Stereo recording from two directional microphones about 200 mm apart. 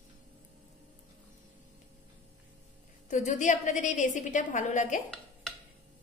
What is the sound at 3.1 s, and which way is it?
A woman's voice, 40° left (ahead or behind).